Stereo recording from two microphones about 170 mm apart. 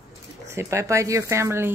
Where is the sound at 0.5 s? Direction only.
15° right (ahead or behind).